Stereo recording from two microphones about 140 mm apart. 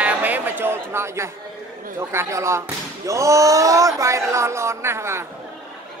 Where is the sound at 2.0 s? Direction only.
20° right (ahead or behind).